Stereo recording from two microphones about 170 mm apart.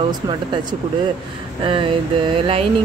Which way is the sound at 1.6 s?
30° right (ahead or behind).